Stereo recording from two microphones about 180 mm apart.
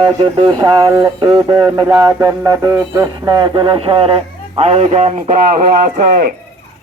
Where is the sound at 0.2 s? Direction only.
25° right (ahead or behind).